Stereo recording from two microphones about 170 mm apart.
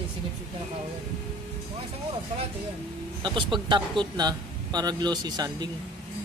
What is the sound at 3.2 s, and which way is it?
A man's voice, 30° right (ahead or behind).